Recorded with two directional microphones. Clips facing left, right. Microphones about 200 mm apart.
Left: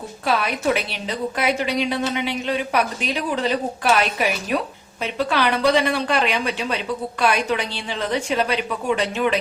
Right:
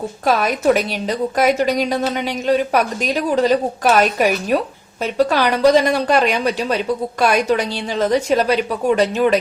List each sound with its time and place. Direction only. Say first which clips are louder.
0.3 s a woman's voice: right 5 dB; 45° right (ahead or behind)